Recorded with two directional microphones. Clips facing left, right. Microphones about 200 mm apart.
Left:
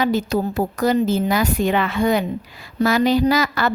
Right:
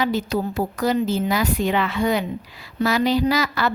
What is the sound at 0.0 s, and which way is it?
A woman's voice, 45° left (ahead or behind).